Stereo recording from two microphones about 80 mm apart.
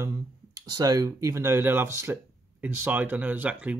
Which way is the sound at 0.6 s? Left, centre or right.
Right.